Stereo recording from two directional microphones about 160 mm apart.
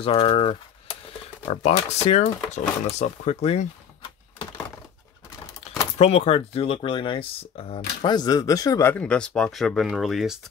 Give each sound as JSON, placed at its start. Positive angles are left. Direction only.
{"t": 0.0, "sound": "speech", "side_deg": 35}
{"t": 5.6, "sound": "speech", "side_deg": 40}
{"t": 8.0, "sound": "speech", "side_deg": 25}